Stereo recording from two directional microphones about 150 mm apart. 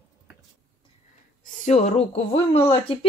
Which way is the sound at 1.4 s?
55° left (ahead or behind).